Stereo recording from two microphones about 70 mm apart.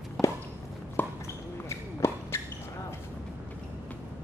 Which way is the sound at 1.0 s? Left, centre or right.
Left.